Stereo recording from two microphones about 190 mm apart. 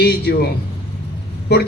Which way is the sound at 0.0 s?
60° left (ahead or behind).